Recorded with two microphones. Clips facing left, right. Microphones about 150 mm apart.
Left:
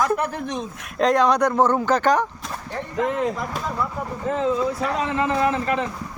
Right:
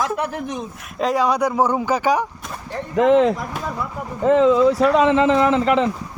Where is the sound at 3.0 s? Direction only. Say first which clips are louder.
Right 9 dB; 85° right.